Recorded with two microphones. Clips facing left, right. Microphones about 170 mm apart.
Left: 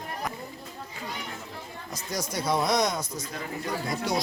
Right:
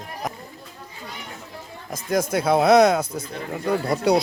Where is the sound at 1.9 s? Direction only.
50° right (ahead or behind).